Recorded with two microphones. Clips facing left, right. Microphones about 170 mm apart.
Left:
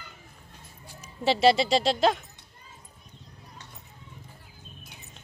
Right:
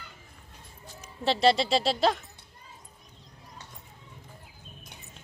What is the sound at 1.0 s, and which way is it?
A woman's voice, 5° left (ahead or behind).